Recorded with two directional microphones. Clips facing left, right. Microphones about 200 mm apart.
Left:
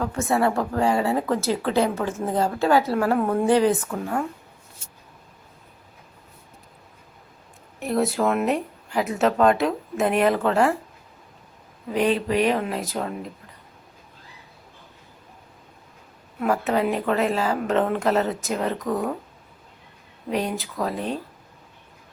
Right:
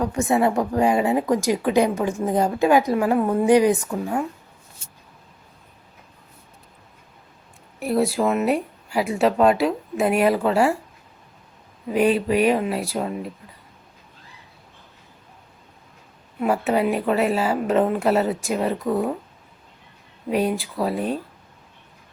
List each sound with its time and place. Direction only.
0.0 s speech: 15° right (ahead or behind)
7.8 s speech: 5° right (ahead or behind)
11.9 s speech: 10° right (ahead or behind)
16.4 s speech: 15° right (ahead or behind)
20.3 s speech: 10° right (ahead or behind)